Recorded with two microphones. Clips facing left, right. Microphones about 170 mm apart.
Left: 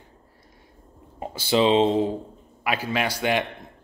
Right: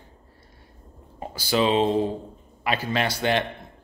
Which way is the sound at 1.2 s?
25° left (ahead or behind).